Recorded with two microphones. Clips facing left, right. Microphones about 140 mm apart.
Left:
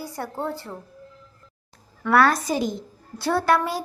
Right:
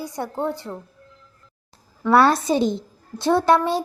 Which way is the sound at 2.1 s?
25° right (ahead or behind).